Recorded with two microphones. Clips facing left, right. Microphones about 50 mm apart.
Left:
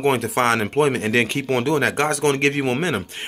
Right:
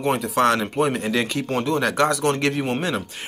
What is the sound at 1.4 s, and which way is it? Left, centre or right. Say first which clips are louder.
Speech: left 3 dB; left.